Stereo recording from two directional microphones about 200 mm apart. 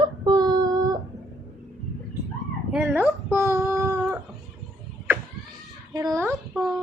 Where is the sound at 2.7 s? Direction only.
5° right (ahead or behind).